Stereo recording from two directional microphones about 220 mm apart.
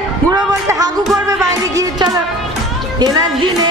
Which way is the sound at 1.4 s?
15° right (ahead or behind).